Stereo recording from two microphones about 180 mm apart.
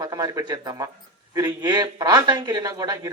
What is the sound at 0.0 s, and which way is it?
Speech, 20° right (ahead or behind).